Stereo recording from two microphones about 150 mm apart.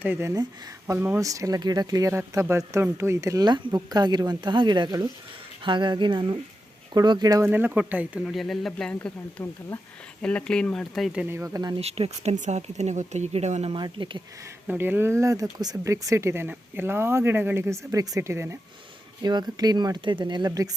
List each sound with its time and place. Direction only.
0.0 s speech: 15° right (ahead or behind)
7.4 s speech: 15° right (ahead or behind)
8.2 s speech: centre (ahead or behind)
9.0 s speech: 15° left (ahead or behind); by 11.8 s 25° right (ahead or behind)
11.8 s speech: 40° right (ahead or behind)
13.7 s speech: 30° right (ahead or behind)
14.7 s speech: 15° right (ahead or behind)